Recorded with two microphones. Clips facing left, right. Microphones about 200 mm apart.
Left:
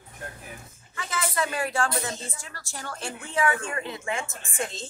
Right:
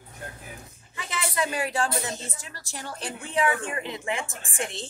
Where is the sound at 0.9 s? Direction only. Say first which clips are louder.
Left 1 dB; 20° right (ahead or behind).